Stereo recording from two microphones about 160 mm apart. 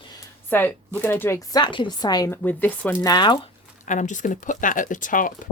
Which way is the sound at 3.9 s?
50° left (ahead or behind).